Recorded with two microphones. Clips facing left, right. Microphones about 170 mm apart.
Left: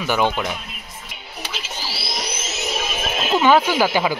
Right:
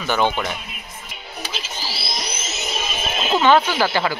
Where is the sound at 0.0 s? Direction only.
5° left (ahead or behind).